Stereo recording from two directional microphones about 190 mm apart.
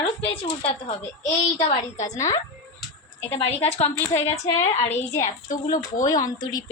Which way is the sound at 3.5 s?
30° left (ahead or behind).